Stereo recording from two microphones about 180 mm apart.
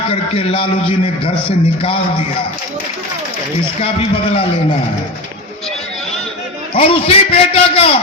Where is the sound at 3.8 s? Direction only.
30° left (ahead or behind).